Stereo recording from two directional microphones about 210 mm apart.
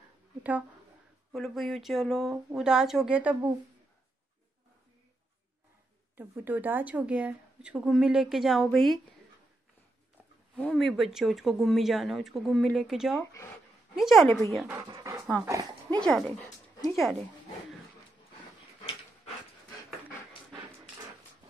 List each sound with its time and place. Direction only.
0.4 s a woman's voice: 5° right (ahead or behind)
6.1 s speech: 10° right (ahead or behind)
10.5 s speech: 5° left (ahead or behind)
14.8 s speech: 20° right (ahead or behind)
16.0 s speech: centre (ahead or behind)